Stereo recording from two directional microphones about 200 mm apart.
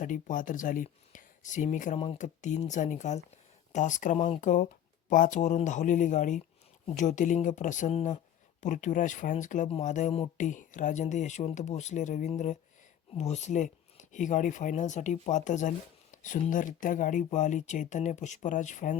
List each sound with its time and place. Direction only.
0.0 s speech: 40° left (ahead or behind)